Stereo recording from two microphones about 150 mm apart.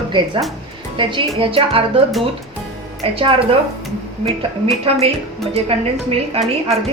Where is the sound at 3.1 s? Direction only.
40° right (ahead or behind).